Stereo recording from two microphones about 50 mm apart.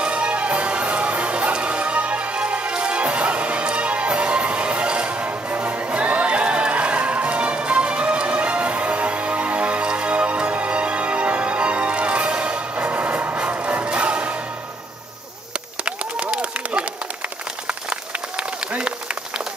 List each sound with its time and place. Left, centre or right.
0.0 s music: right
15.5 s run: right
18.8 s applause: right